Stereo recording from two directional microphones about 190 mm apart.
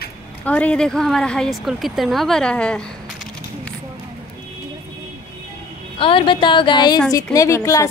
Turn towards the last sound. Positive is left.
turn(degrees=15)  # may be behind; listen again after turning